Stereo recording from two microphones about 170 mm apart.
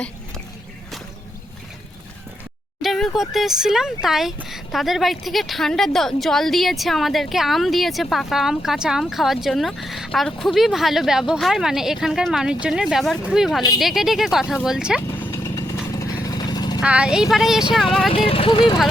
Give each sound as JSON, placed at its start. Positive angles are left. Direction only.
{"t": 2.8, "sound": "speech", "side_deg": 0}
{"t": 15.2, "sound": "motorcycle", "side_deg": 15}
{"t": 16.2, "sound": "vehicle", "side_deg": 25}
{"t": 16.8, "sound": "speech", "side_deg": -5}
{"t": 18.1, "sound": "speech", "side_deg": 35}